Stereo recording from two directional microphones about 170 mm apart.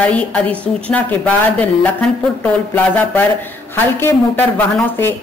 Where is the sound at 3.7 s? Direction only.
10° left (ahead or behind).